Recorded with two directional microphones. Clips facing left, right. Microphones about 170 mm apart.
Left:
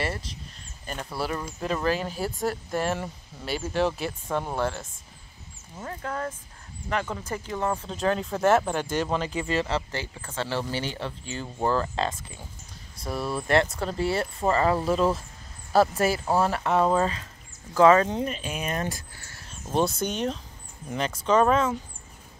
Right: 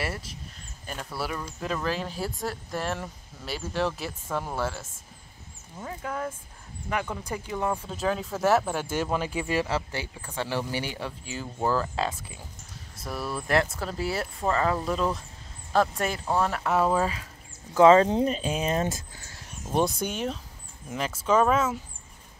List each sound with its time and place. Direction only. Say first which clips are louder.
0.0 s speech: left 2 dB; 5° right (ahead or behind)
17.7 s speech: right 1 dB; 25° right (ahead or behind); by 21.7 s 5° right (ahead or behind)